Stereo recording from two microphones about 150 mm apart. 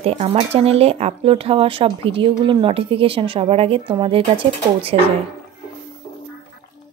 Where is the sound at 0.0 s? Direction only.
45° right (ahead or behind).